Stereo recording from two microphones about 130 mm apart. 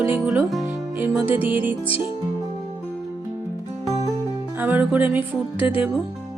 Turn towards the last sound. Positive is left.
turn(degrees=-15)  # may be behind; listen again after turning